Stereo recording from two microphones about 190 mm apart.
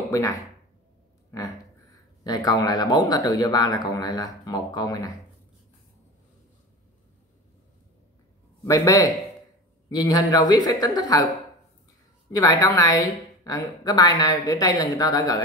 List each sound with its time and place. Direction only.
0.1 s speech: 15° left (ahead or behind)
2.2 s speech: 20° left (ahead or behind)
8.6 s a man's voice: 15° left (ahead or behind)
12.3 s speech: 20° left (ahead or behind)